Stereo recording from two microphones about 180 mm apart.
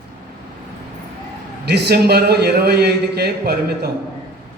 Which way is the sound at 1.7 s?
60° right (ahead or behind).